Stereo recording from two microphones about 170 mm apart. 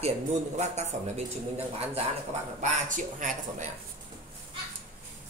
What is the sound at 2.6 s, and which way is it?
Speech, 50° right (ahead or behind).